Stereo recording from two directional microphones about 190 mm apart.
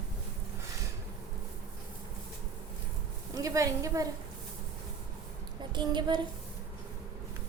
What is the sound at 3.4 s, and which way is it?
Speech, 15° right (ahead or behind).